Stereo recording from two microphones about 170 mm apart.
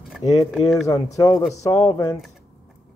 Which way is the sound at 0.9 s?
20° left (ahead or behind).